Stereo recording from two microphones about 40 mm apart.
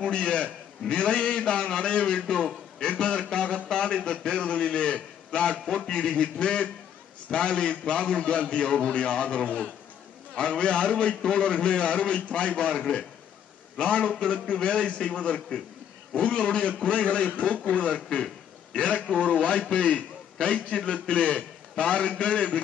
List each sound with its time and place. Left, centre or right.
0.0 s a man's voice: left
12.7 s a man's voice: centre
13.7 s a man's voice: left